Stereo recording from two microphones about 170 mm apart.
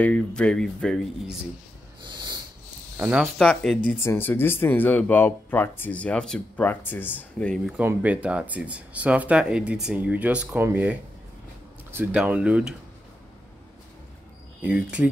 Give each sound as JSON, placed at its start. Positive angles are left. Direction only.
{"t": 0.0, "sound": "speech", "side_deg": 5}
{"t": 2.0, "sound": "a sound", "side_deg": -25}
{"t": 3.0, "sound": "speech", "side_deg": -10}
{"t": 3.3, "sound": "speech", "side_deg": 5}
{"t": 4.0, "sound": "speech", "side_deg": 15}
{"t": 14.6, "sound": "speech", "side_deg": -10}